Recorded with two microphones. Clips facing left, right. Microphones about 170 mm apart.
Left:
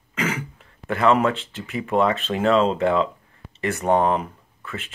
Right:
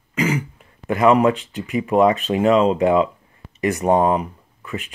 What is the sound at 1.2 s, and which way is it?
Speech, 15° right (ahead or behind).